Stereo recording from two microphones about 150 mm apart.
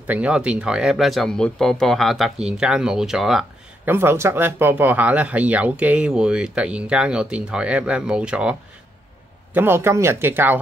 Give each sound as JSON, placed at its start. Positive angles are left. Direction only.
{"t": 0.0, "sound": "speech", "side_deg": -10}
{"t": 3.8, "sound": "speech", "side_deg": -15}